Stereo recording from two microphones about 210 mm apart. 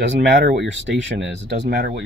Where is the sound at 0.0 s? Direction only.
55° right (ahead or behind).